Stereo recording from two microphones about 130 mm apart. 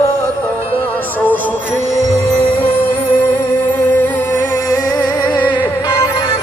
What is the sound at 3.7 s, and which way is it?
Music, 15° left (ahead or behind).